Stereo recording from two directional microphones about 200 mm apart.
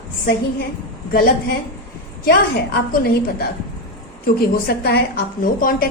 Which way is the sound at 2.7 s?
50° left (ahead or behind).